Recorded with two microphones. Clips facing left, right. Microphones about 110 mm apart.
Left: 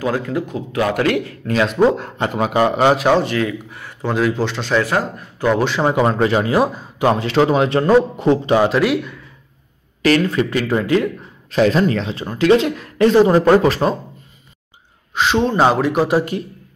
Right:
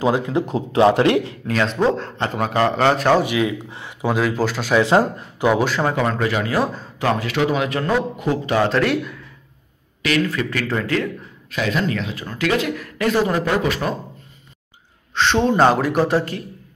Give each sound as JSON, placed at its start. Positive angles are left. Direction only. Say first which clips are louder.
{"t": 0.0, "sound": "a man's voice", "louder": "right 1 dB", "side_deg": -25}
{"t": 1.5, "sound": "a man's voice", "louder": "left 4 dB", "side_deg": 10}
{"t": 3.2, "sound": "a man's voice", "louder": "left 1 dB", "side_deg": -10}
{"t": 4.8, "sound": "a man's voice", "louder": "right 4 dB", "side_deg": -25}
{"t": 5.5, "sound": "a man's voice", "louder": "left 1 dB", "side_deg": -5}
{"t": 5.8, "sound": "speech", "louder": "left 4 dB", "side_deg": 20}
{"t": 6.7, "sound": "speech", "louder": "left 6 dB", "side_deg": 10}
{"t": 7.1, "sound": "a man's voice", "louder": "left 5 dB", "side_deg": 25}
{"t": 8.6, "sound": "a man's voice", "louder": "left 3 dB", "side_deg": 5}
{"t": 10.2, "sound": "a man's voice", "louder": "left 5 dB", "side_deg": 25}
{"t": 11.5, "sound": "a man's voice", "louder": "left 7 dB", "side_deg": 35}
{"t": 15.1, "sound": "a man's voice", "louder": "even", "side_deg": 5}